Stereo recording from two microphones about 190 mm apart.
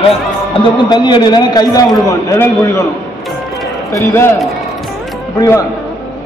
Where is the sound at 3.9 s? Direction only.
15° left (ahead or behind).